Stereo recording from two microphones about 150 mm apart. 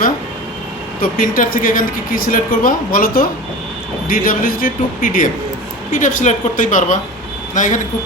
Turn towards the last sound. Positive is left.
turn(degrees=60)  # may be behind; listen again after turning